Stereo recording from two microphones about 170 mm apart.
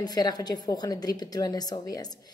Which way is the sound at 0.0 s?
25° left (ahead or behind).